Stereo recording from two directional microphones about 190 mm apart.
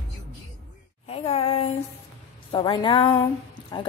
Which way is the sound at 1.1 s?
30° left (ahead or behind).